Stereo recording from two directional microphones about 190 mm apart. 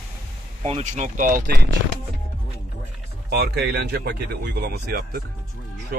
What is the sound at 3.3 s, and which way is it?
Speech, 55° right (ahead or behind).